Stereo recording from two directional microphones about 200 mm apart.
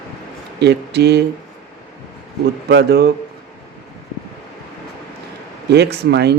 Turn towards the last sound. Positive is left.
turn(degrees=-55)  # may be behind; listen again after turning